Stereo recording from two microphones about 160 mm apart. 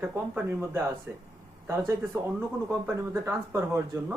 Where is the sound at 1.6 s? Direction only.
15° right (ahead or behind).